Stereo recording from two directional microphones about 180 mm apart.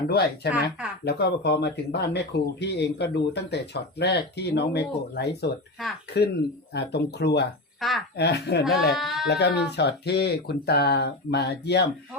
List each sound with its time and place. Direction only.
0.1 s speech: 60° left (ahead or behind)
7.8 s speech: centre (ahead or behind)
8.1 s speech: 65° left (ahead or behind)
9.0 s speech: centre (ahead or behind)
9.2 s speech: 65° left (ahead or behind)